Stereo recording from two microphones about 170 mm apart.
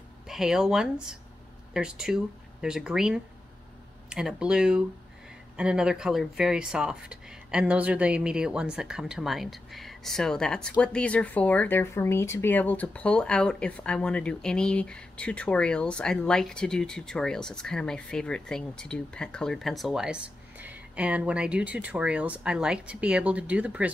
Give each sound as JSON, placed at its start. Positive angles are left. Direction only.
{"t": 0.3, "sound": "speech", "side_deg": -5}